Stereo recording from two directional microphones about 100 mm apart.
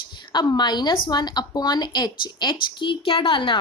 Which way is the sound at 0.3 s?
45° left (ahead or behind).